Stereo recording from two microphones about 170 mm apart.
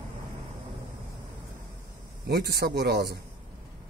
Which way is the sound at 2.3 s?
70° right (ahead or behind).